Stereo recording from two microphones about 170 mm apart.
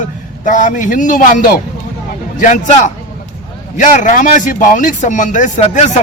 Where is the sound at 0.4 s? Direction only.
50° left (ahead or behind).